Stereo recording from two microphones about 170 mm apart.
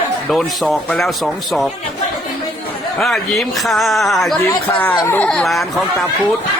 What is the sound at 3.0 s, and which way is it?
Speech, centre (ahead or behind).